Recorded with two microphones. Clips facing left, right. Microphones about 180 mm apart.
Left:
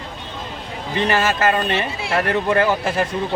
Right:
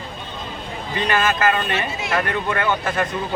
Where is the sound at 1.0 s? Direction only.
30° left (ahead or behind).